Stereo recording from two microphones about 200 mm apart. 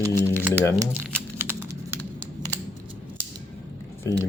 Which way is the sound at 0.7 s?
15° right (ahead or behind).